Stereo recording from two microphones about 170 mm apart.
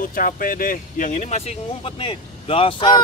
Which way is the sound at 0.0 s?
55° left (ahead or behind).